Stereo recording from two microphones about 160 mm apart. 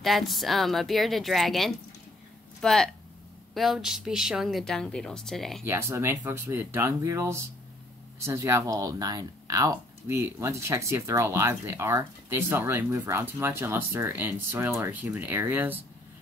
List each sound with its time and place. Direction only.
0.0 s a woman's voice: centre (ahead or behind)
5.7 s speech: 15° right (ahead or behind)